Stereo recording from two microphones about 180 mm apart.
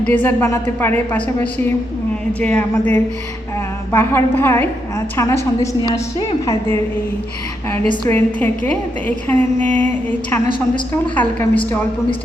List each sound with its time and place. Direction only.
0.0 s a woman's voice: 10° left (ahead or behind)
7.9 s a woman's voice: 15° left (ahead or behind)